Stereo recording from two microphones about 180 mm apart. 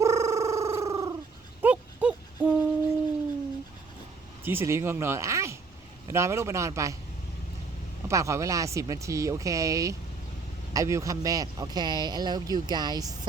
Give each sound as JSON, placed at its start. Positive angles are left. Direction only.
{"t": 0.0, "sound": "a sound", "side_deg": -15}
{"t": 1.6, "sound": "hoot", "side_deg": -5}
{"t": 4.4, "sound": "speech", "side_deg": -15}
{"t": 8.0, "sound": "speech", "side_deg": -15}